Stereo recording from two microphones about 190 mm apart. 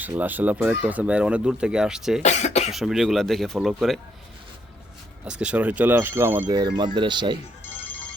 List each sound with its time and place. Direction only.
0.0 s speech: 10° right (ahead or behind)
2.2 s speech: 35° left (ahead or behind)
2.7 s speech: centre (ahead or behind)
5.2 s speech: 5° right (ahead or behind)
6.7 s speech: 25° right (ahead or behind)